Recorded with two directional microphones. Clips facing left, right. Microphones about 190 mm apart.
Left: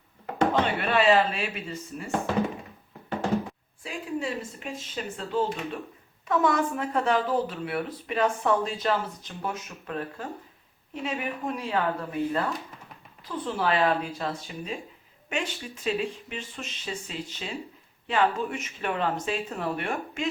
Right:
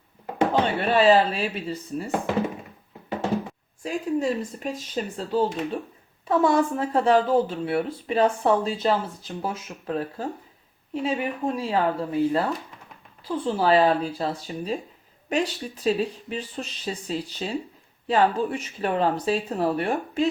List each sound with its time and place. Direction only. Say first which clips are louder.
0.8 s speech: right 5 dB; 35° right (ahead or behind)
3.8 s speech: right 7 dB; 40° right (ahead or behind)